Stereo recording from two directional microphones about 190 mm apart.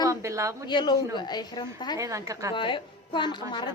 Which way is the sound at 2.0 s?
15° right (ahead or behind).